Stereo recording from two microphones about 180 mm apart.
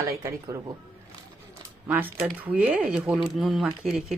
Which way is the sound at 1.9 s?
10° right (ahead or behind).